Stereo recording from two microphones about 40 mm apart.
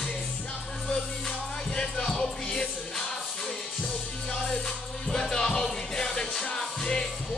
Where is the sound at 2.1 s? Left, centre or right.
Left.